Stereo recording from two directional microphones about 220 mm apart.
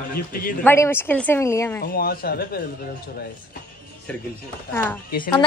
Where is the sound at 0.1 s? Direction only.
40° left (ahead or behind).